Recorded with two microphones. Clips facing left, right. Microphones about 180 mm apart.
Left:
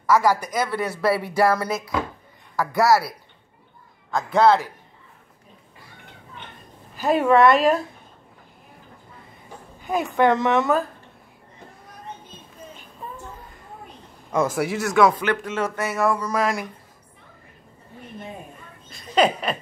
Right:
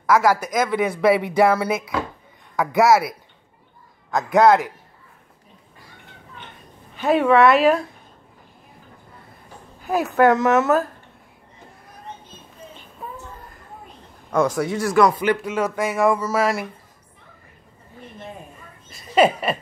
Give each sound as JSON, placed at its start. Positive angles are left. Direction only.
{"t": 0.0, "sound": "speech", "side_deg": -10}
{"t": 4.3, "sound": "speech", "side_deg": -15}
{"t": 6.9, "sound": "a woman's voice", "side_deg": 0}
{"t": 9.8, "sound": "a woman's voice", "side_deg": -5}
{"t": 14.3, "sound": "a woman's voice", "side_deg": 5}
{"t": 15.1, "sound": "speech", "side_deg": -10}
{"t": 18.9, "sound": "speech", "side_deg": -5}